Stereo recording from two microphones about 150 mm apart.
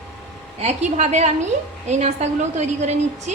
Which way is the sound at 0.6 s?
45° right (ahead or behind).